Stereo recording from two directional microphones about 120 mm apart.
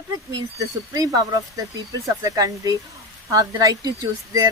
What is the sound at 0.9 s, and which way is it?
Speech, 30° right (ahead or behind).